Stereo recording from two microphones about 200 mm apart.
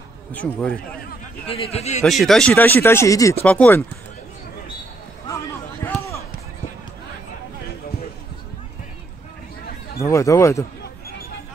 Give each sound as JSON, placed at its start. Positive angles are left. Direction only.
{"t": 0.3, "sound": "speech", "side_deg": 5}
{"t": 1.5, "sound": "a man's voice", "side_deg": 30}
{"t": 2.0, "sound": "speech", "side_deg": 0}
{"t": 5.9, "sound": "run", "side_deg": 15}
{"t": 10.1, "sound": "speech", "side_deg": 15}